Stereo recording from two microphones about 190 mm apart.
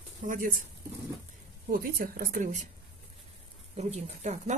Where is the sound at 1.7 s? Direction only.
50° right (ahead or behind).